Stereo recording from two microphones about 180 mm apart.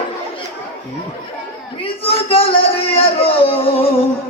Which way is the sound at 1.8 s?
30° left (ahead or behind).